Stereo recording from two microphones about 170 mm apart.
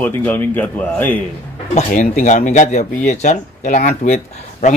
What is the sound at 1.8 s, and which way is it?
Speech, 50° left (ahead or behind).